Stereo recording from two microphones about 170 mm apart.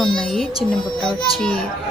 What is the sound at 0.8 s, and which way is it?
Speech, 25° left (ahead or behind).